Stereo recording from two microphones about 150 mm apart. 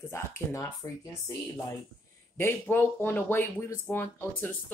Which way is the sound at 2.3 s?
15° left (ahead or behind).